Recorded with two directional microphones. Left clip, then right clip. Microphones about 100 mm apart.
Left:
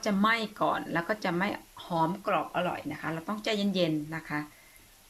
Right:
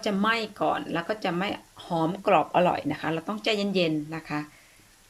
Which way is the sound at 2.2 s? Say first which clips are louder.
Right 8 dB; 45° right (ahead or behind).